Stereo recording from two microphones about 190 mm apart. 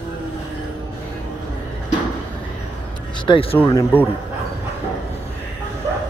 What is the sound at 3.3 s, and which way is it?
Speech, 30° left (ahead or behind).